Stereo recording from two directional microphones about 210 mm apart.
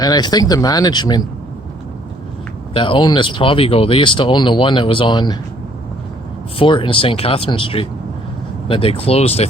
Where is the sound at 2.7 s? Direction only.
25° left (ahead or behind).